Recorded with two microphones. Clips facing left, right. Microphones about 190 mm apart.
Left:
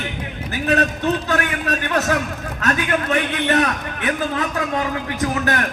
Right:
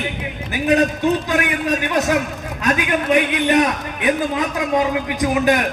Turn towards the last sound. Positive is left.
turn(degrees=-15)  # may be behind; listen again after turning